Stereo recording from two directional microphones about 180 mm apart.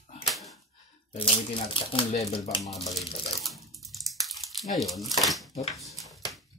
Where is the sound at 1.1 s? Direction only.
30° left (ahead or behind).